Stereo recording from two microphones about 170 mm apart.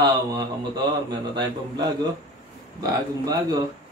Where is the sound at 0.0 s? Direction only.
25° right (ahead or behind).